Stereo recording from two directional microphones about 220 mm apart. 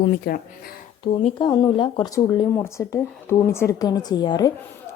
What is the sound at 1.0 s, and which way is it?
Speech, 25° left (ahead or behind).